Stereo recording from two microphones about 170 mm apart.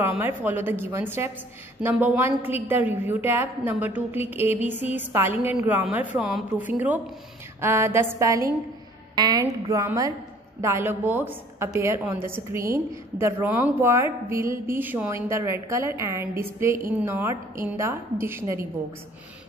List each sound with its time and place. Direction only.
0.0 s a woman's voice: 10° right (ahead or behind)